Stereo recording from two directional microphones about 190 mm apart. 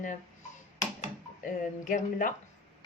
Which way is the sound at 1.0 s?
40° left (ahead or behind).